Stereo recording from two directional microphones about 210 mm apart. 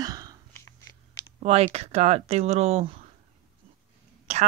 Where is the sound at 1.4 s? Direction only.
30° right (ahead or behind).